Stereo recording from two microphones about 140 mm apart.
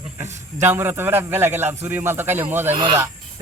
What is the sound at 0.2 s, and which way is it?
A man's voice, 15° right (ahead or behind).